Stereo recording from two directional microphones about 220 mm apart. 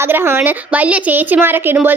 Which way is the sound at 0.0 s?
10° right (ahead or behind).